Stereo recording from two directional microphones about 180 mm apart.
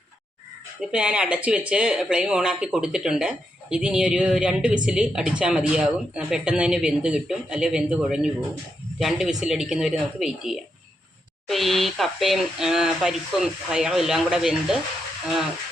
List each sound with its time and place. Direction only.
0.8 s speech: 5° right (ahead or behind)